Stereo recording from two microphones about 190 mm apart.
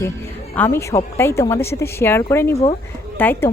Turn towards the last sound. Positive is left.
turn(degrees=10)  # may be behind; listen again after turning